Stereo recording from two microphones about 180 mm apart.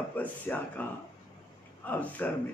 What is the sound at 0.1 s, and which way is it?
Speech, 10° left (ahead or behind).